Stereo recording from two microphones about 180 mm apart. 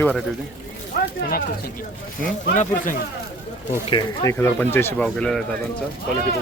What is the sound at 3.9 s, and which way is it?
Speech, 25° left (ahead or behind).